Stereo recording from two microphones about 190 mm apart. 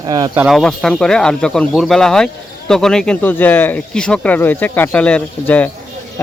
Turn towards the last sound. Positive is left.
turn(degrees=10)  # may be behind; listen again after turning